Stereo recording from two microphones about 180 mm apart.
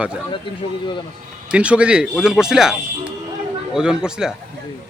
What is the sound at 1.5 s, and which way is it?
Speech, 5° right (ahead or behind).